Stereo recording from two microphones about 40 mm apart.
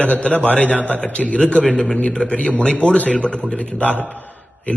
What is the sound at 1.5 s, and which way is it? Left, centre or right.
Speech, left.